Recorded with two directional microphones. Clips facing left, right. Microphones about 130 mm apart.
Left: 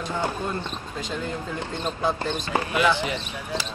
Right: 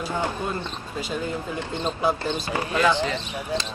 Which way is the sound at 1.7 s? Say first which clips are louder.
Right 3 dB; 20° right (ahead or behind).